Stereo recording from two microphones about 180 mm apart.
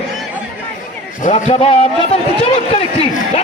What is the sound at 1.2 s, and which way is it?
Speech, 40° left (ahead or behind).